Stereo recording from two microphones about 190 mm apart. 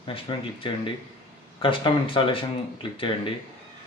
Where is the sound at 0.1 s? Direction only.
30° left (ahead or behind).